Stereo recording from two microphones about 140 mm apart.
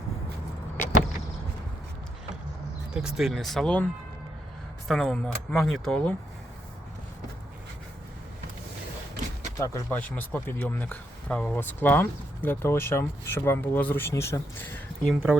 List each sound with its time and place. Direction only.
2.9 s speech: 5° right (ahead or behind)
4.9 s speech: 5° left (ahead or behind)
9.6 s speech: 20° left (ahead or behind)
15.1 s speech: 10° right (ahead or behind)